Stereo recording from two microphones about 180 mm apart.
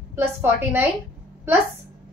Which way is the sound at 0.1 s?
15° right (ahead or behind).